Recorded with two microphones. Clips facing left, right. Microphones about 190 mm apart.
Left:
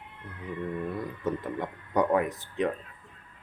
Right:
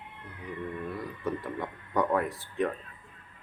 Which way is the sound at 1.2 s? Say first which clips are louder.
Left 2 dB; 20° left (ahead or behind).